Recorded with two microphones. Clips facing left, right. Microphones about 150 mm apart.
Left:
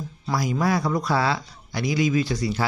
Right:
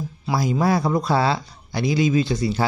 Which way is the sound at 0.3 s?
25° right (ahead or behind).